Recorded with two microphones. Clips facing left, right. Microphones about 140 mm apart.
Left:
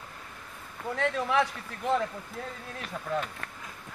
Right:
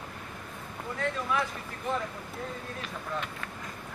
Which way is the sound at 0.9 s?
85° left.